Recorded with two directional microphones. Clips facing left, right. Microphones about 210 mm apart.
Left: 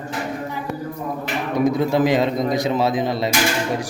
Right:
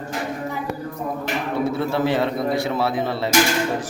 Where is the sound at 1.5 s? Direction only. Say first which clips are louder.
Left 5 dB; 15° left (ahead or behind).